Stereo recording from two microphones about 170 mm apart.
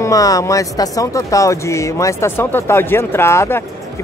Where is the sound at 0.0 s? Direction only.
20° left (ahead or behind).